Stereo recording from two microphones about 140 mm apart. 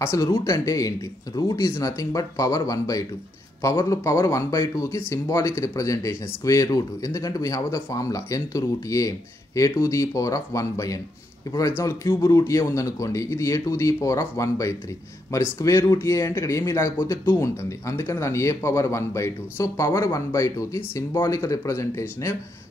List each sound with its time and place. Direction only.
0.0 s speech: 20° left (ahead or behind)